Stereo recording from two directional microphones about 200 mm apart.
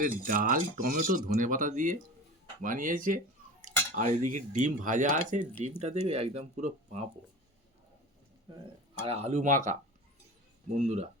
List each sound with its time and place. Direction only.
0.0 s speech: 45° right (ahead or behind)
9.0 s speech: 30° right (ahead or behind)